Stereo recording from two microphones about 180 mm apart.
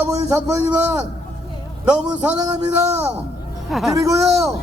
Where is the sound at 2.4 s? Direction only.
20° right (ahead or behind).